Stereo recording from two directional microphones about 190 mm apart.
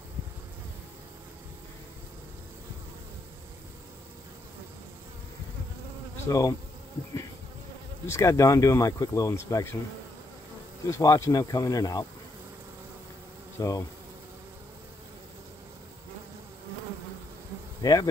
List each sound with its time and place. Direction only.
6.2 s speech: 20° left (ahead or behind)
8.1 s speech: 15° left (ahead or behind)
10.9 s speech: 15° left (ahead or behind)
13.6 s bee: 20° left (ahead or behind)
17.8 s insect: 20° left (ahead or behind)